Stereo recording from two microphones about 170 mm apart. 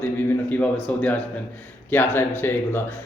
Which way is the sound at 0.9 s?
10° left (ahead or behind).